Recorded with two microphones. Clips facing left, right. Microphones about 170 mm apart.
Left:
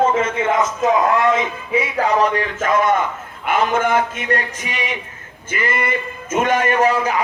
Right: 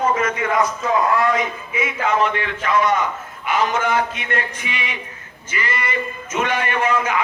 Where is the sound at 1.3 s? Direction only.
35° left (ahead or behind).